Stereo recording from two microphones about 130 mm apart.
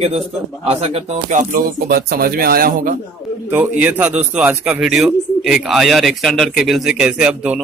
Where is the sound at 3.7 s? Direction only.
10° right (ahead or behind).